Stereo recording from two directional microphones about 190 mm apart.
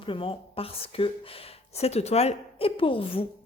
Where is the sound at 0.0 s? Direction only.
30° left (ahead or behind).